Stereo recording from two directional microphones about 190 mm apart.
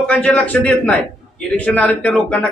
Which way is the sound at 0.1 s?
5° left (ahead or behind).